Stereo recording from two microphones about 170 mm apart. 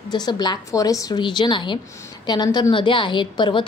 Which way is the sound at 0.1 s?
25° left (ahead or behind).